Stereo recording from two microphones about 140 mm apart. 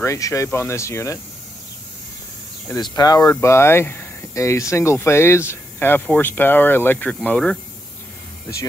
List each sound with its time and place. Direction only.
0.0 s speech: 20° left (ahead or behind)
2.8 s speech: 30° left (ahead or behind); by 7.5 s 5° left (ahead or behind)